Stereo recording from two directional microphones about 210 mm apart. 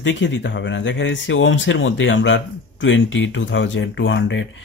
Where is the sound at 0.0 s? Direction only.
60° left (ahead or behind).